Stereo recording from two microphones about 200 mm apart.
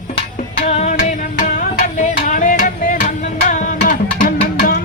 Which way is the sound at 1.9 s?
40° left (ahead or behind).